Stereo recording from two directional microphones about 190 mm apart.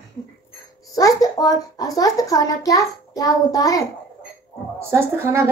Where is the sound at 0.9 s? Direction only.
20° left (ahead or behind).